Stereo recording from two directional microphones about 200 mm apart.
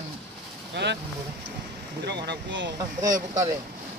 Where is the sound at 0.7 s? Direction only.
60° right (ahead or behind).